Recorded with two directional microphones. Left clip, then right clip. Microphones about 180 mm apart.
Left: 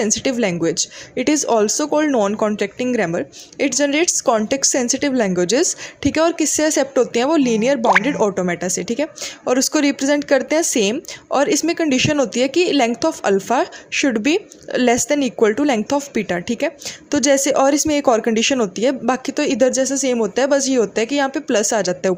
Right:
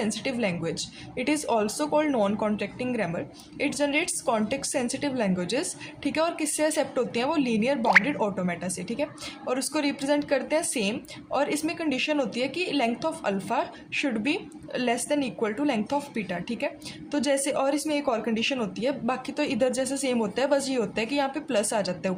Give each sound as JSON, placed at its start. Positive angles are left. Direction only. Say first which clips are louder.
{"t": 0.0, "sound": "a woman's voice", "louder": "left 10 dB", "side_deg": 40}